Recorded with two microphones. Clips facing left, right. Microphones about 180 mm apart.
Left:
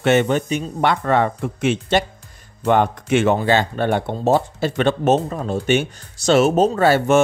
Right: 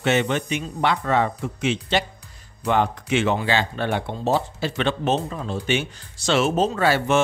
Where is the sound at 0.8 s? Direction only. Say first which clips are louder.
Left 3 dB; 55° left (ahead or behind).